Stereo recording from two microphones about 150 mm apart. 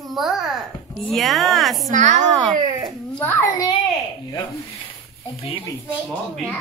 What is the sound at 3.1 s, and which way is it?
Speech, 15° left (ahead or behind).